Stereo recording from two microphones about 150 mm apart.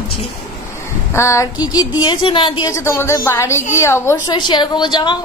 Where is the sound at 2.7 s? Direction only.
15° left (ahead or behind).